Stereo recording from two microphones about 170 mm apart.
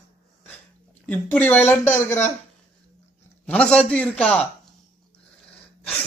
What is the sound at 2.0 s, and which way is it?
Speech, 45° left (ahead or behind).